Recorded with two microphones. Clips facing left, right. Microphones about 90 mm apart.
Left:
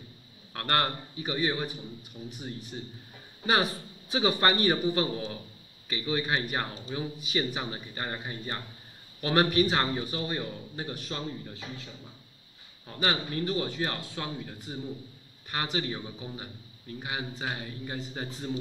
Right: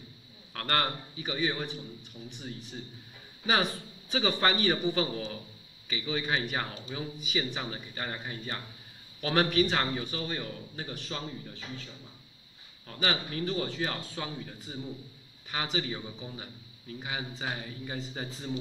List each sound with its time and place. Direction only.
0.5 s a man's voice: 10° left (ahead or behind)
8.0 s a man's voice: 30° left (ahead or behind)
9.2 s a man's voice: 5° left (ahead or behind)
13.0 s a man's voice: 5° left (ahead or behind)